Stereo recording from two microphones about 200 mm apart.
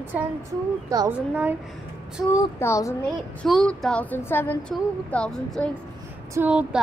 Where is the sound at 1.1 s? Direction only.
10° right (ahead or behind).